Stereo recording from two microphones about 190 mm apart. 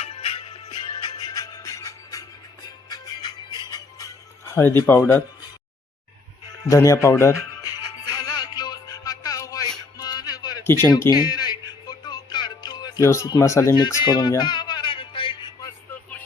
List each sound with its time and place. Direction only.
0.0 s music: 30° left (ahead or behind)
6.7 s music: 15° left (ahead or behind)